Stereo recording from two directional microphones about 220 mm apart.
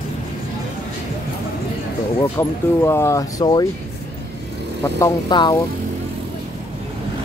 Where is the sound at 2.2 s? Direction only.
10° left (ahead or behind).